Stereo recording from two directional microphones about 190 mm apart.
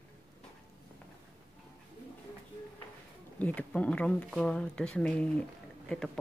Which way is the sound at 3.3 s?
5° left (ahead or behind).